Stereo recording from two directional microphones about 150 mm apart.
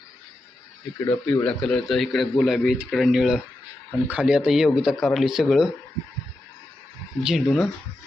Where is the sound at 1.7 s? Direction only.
Centre (ahead or behind).